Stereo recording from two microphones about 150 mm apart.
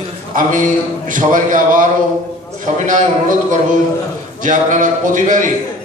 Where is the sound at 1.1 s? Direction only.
60° right (ahead or behind).